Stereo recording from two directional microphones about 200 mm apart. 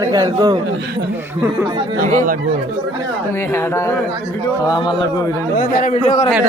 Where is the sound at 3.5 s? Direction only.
10° left (ahead or behind).